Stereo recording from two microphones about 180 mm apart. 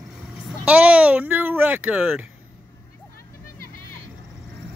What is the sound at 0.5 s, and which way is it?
Speech, 5° right (ahead or behind).